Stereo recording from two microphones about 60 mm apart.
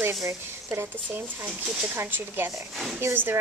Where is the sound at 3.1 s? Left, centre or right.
Right.